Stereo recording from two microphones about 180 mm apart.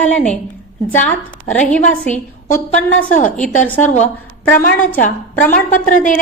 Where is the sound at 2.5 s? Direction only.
10° left (ahead or behind).